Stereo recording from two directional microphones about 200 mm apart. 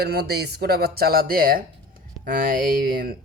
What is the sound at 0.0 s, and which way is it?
Speech, 50° right (ahead or behind).